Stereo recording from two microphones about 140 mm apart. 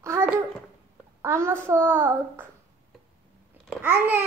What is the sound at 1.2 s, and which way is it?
Speech, 20° right (ahead or behind).